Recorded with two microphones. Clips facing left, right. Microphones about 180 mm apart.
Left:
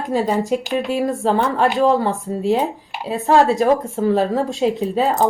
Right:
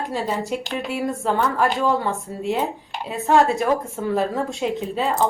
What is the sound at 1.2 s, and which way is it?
Speech, 35° left (ahead or behind).